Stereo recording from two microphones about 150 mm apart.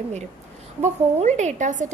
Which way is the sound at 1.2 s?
50° right (ahead or behind).